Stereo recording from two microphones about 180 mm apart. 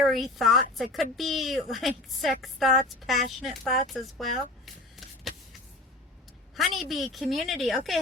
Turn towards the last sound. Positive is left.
turn(degrees=0)  # may be behind; listen again after turning